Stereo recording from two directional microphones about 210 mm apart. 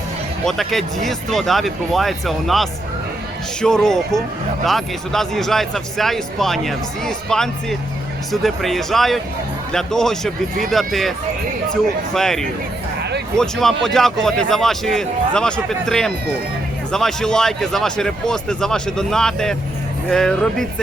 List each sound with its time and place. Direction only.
0.4 s speech: centre (ahead or behind)
13.0 s a sound: 50° right (ahead or behind)
13.3 s speech: centre (ahead or behind)